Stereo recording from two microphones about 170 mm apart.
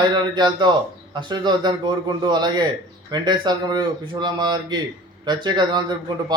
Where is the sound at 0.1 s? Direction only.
25° right (ahead or behind).